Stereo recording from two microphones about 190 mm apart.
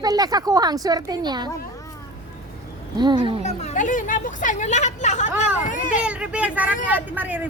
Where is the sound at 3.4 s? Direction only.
35° left (ahead or behind).